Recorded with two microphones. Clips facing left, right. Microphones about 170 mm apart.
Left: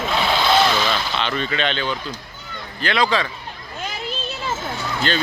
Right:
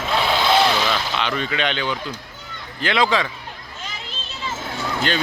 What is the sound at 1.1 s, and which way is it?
Speech, 10° right (ahead or behind).